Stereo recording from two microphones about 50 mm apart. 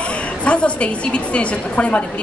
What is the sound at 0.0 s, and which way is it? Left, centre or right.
A woman's voice, left.